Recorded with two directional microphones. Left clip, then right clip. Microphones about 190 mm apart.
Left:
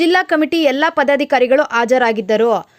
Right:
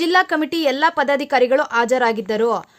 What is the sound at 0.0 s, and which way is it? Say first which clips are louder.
A woman's voice: left 3 dB; 15° left (ahead or behind).